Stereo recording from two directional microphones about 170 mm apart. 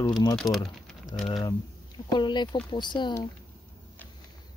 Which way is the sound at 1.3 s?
25° left (ahead or behind).